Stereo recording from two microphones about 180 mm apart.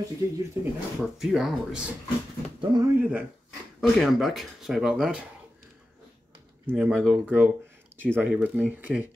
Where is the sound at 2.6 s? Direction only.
20° right (ahead or behind).